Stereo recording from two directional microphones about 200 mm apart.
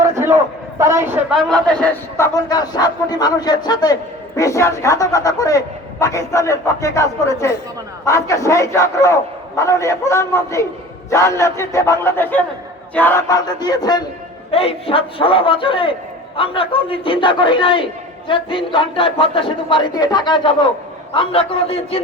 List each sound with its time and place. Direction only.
0.8 s a woman's voice: 15° right (ahead or behind)
1.4 s a man's voice: 5° left (ahead or behind); by 22.0 s 30° left (ahead or behind)